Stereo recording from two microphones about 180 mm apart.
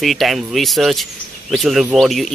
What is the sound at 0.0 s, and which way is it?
Speech, centre (ahead or behind).